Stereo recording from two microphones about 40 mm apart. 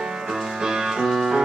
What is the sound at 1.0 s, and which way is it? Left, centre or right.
Music, centre.